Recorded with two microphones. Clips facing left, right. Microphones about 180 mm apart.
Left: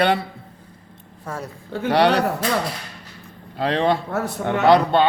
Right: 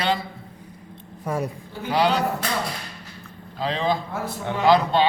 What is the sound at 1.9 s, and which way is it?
Speech, 70° left (ahead or behind).